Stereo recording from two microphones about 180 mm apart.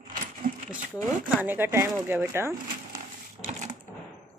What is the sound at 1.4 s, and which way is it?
Speech, 10° right (ahead or behind).